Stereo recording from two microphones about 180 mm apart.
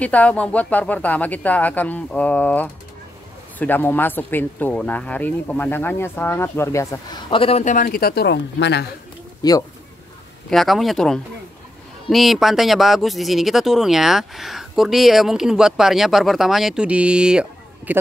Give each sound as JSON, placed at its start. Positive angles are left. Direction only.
{"t": 0.0, "sound": "speech", "side_deg": 10}
{"t": 9.4, "sound": "speech", "side_deg": 20}
{"t": 10.5, "sound": "speech", "side_deg": 0}